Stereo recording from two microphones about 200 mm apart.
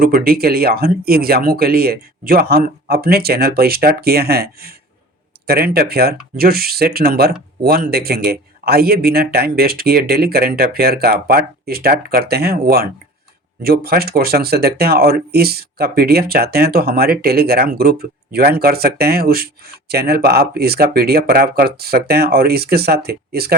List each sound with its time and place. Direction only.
0.0 s speech: 50° right (ahead or behind)